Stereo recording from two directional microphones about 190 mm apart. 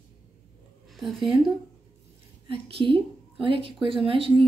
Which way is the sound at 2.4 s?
30° right (ahead or behind).